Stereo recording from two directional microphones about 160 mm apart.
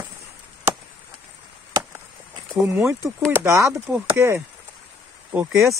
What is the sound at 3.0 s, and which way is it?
Speech, 15° right (ahead or behind).